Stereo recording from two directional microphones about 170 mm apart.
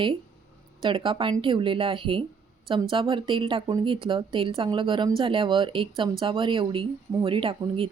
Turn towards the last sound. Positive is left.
turn(degrees=-35)  # may be behind; listen again after turning